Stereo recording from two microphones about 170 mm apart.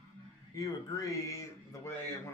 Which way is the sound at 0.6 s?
20° left (ahead or behind).